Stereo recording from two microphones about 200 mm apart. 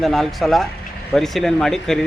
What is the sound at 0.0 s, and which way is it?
Speech, centre (ahead or behind).